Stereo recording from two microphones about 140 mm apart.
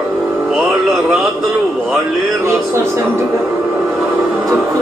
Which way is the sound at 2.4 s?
20° right (ahead or behind).